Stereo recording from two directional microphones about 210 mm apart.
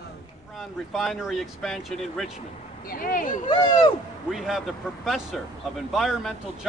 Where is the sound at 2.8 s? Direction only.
40° left (ahead or behind).